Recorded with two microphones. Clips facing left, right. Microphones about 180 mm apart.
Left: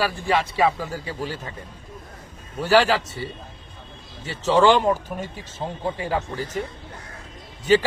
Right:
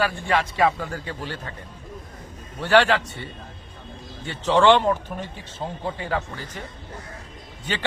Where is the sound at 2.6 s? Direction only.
5° left (ahead or behind).